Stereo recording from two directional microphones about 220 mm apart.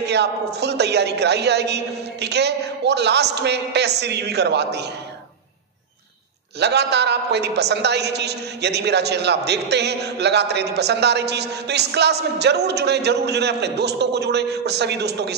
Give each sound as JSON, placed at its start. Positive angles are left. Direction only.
{"t": 0.1, "sound": "a man's voice", "side_deg": -50}
{"t": 6.6, "sound": "a man's voice", "side_deg": -50}